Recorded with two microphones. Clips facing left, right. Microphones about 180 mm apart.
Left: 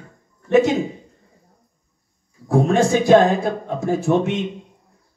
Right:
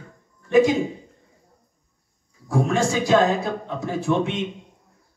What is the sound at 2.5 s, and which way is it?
Speech, 55° left (ahead or behind).